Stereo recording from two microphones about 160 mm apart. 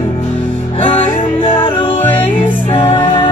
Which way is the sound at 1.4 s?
35° left (ahead or behind).